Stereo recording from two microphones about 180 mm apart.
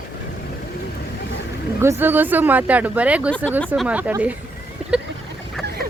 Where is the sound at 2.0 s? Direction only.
10° right (ahead or behind).